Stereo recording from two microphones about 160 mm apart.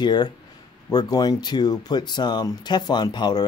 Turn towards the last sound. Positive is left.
turn(degrees=25)  # may be behind; listen again after turning